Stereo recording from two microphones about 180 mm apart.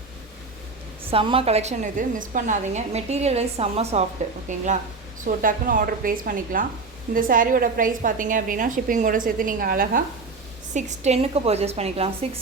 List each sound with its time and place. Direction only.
1.0 s a woman's voice: 30° right (ahead or behind); by 10.0 s 55° right (ahead or behind)
10.8 s a woman's voice: 40° right (ahead or behind)